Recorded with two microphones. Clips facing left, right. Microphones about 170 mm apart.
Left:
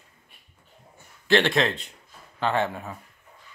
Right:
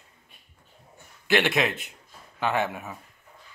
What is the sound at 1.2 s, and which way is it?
A man's voice, 15° right (ahead or behind).